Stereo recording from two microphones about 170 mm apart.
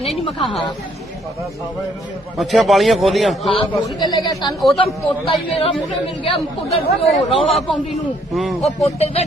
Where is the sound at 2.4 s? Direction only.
Centre (ahead or behind).